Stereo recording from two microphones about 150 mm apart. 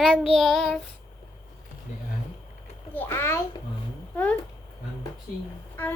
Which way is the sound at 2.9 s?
15° left (ahead or behind).